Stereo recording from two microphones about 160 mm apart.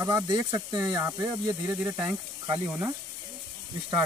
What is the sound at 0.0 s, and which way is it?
Speech, 25° right (ahead or behind).